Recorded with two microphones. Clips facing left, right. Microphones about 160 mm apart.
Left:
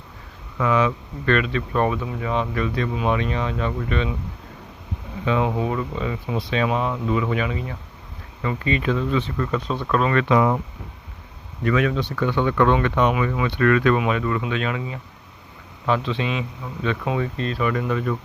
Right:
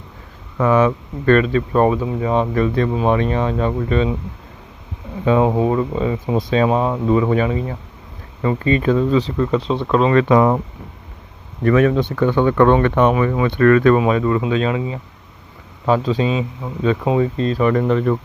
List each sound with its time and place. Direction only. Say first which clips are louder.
0.6 s speech: right 5 dB; 40° right (ahead or behind)
5.2 s speech: right 7 dB; 35° right (ahead or behind)
10.2 s speech: right 5 dB; 45° right (ahead or behind)
11.6 s speech: right 7 dB; 45° right (ahead or behind); by 14.9 s 25° right (ahead or behind)
15.9 s speech: right 6 dB; 40° right (ahead or behind)
17.8 s speech: right 7 dB; 50° right (ahead or behind)